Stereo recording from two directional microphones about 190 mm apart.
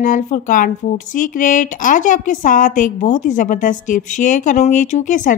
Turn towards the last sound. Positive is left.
turn(degrees=45)  # may be behind; listen again after turning